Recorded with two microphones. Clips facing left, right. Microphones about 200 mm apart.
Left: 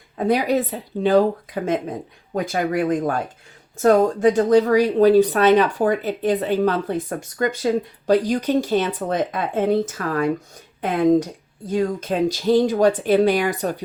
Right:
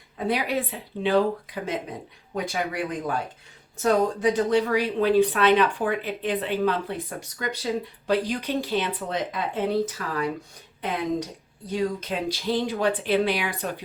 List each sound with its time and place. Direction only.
0.2 s speech: 45° left (ahead or behind)